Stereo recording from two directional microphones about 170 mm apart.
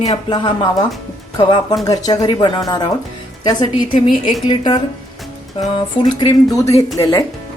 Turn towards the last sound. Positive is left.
turn(degrees=20)  # may be behind; listen again after turning